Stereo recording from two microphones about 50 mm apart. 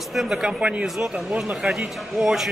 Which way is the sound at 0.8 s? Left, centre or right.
Centre.